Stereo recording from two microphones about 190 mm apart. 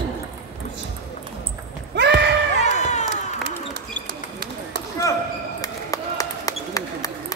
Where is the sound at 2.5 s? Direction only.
35° left (ahead or behind).